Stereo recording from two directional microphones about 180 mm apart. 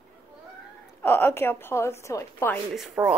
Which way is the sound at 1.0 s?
15° left (ahead or behind).